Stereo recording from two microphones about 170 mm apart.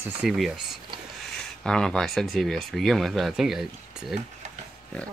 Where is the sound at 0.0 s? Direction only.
5° right (ahead or behind).